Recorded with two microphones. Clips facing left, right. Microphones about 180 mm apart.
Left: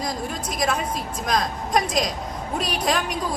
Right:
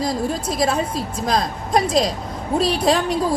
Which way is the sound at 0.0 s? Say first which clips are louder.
Right 6 dB; 30° right (ahead or behind).